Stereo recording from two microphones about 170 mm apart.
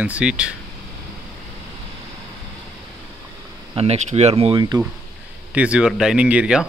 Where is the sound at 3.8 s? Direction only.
40° right (ahead or behind).